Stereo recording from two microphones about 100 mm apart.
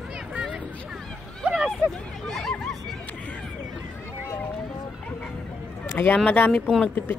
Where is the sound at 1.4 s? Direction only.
10° right (ahead or behind).